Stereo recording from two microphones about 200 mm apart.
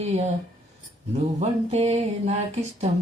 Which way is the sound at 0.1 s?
35° right (ahead or behind).